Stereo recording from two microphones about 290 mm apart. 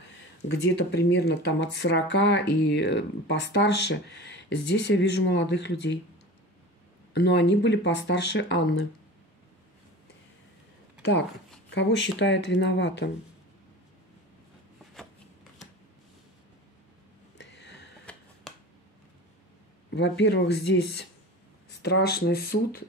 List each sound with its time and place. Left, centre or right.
0.5 s speech: left
7.2 s speech: left
11.7 s speech: left
17.4 s a sound: left
19.9 s speech: left